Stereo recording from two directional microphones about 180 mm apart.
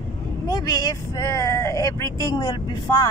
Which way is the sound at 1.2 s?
15° left (ahead or behind).